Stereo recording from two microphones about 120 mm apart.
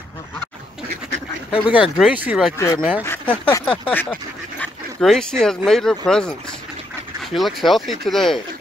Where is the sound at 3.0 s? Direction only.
15° left (ahead or behind).